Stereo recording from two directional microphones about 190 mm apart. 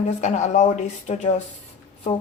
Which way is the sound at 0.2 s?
40° left (ahead or behind).